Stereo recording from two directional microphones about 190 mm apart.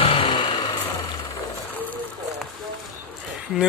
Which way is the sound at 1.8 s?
10° left (ahead or behind).